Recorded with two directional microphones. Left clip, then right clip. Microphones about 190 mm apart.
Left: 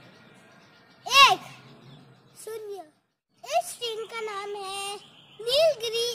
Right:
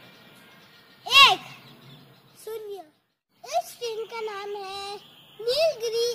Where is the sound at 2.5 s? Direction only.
10° left (ahead or behind).